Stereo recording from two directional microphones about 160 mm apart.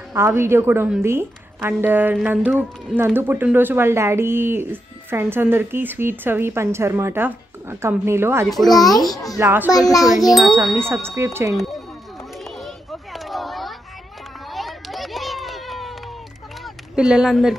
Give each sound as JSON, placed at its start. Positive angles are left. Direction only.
{"t": 0.1, "sound": "speech", "side_deg": -15}
{"t": 3.0, "sound": "speech", "side_deg": -15}
{"t": 8.5, "sound": "speech", "side_deg": 0}
{"t": 9.0, "sound": "a child's voice", "side_deg": 25}
{"t": 9.4, "sound": "speech", "side_deg": -15}
{"t": 10.6, "sound": "speech", "side_deg": 0}
{"t": 11.1, "sound": "speech", "side_deg": -20}
{"t": 12.4, "sound": "children playing", "side_deg": 0}
{"t": 14.5, "sound": "a sound", "side_deg": 0}
{"t": 16.9, "sound": "speech", "side_deg": -5}